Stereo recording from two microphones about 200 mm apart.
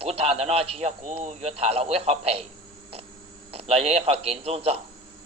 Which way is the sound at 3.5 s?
30° right (ahead or behind).